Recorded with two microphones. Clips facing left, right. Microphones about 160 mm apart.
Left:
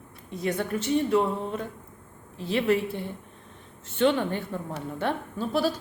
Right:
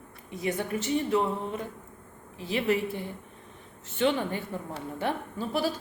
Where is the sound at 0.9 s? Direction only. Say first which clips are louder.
Left 3 dB; 55° left (ahead or behind).